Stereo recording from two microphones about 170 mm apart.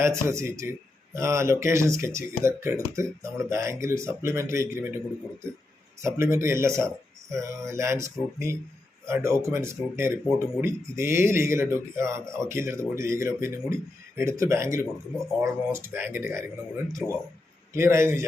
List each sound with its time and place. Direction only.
0.0 s speech: 15° right (ahead or behind)
6.0 s speech: 15° right (ahead or behind)